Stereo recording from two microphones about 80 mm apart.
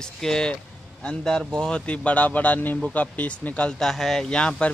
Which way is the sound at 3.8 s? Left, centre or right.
Centre.